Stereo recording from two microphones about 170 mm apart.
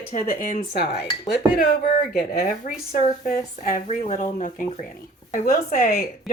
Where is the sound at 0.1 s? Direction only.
55° left (ahead or behind).